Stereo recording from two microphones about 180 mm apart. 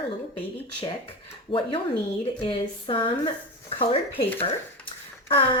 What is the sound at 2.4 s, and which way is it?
Speech, 30° left (ahead or behind).